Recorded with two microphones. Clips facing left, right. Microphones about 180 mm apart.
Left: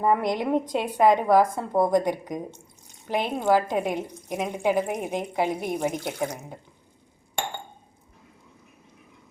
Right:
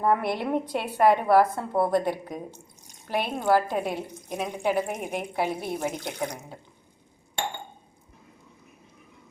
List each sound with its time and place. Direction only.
0.0 s a woman's voice: 15° left (ahead or behind)